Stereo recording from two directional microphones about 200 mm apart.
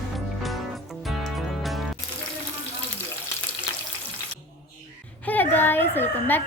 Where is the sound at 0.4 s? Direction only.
Centre (ahead or behind).